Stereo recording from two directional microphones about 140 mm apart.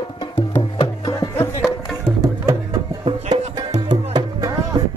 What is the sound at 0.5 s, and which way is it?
Music, 30° left (ahead or behind).